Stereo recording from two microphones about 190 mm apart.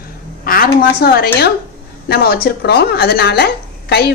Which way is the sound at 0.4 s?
50° left (ahead or behind).